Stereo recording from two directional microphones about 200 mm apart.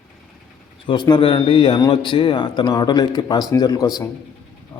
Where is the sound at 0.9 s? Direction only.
20° left (ahead or behind).